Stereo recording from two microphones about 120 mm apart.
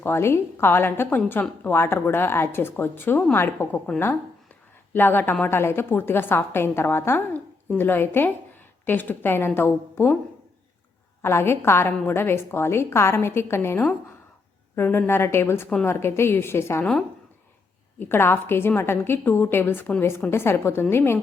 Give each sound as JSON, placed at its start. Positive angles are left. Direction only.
{"t": 0.0, "sound": "a woman's voice", "side_deg": 20}
{"t": 4.9, "sound": "a woman's voice", "side_deg": 15}
{"t": 11.2, "sound": "a woman's voice", "side_deg": 20}
{"t": 18.0, "sound": "a woman's voice", "side_deg": 20}